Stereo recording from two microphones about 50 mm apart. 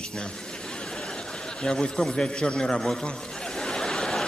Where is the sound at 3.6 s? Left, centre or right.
Centre.